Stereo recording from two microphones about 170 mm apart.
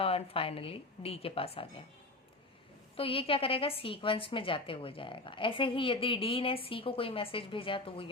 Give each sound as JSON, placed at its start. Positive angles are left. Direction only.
{"t": 0.0, "sound": "a woman's voice", "side_deg": 35}
{"t": 2.9, "sound": "a woman's voice", "side_deg": 35}